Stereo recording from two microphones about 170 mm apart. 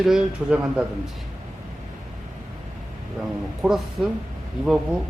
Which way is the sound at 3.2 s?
Centre (ahead or behind).